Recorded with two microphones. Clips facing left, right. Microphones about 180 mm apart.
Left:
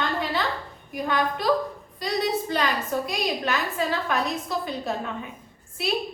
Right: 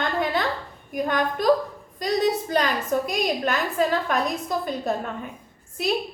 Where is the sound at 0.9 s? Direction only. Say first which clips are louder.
Right 2 dB; 50° right (ahead or behind).